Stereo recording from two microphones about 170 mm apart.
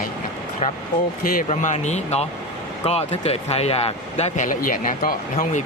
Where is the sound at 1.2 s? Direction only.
50° left (ahead or behind).